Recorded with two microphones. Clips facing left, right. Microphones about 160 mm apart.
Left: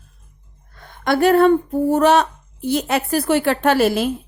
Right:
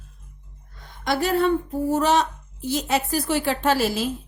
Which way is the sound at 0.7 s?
55° left (ahead or behind).